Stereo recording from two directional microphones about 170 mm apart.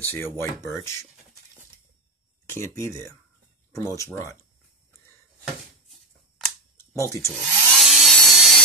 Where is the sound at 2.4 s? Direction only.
15° left (ahead or behind).